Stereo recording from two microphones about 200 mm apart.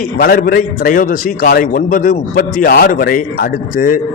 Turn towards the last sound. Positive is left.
turn(degrees=45)  # may be behind; listen again after turning